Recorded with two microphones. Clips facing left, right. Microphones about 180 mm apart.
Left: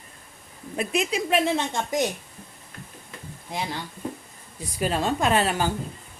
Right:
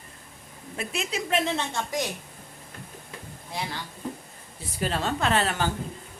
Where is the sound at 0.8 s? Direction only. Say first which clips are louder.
Left 6 dB; 15° left (ahead or behind).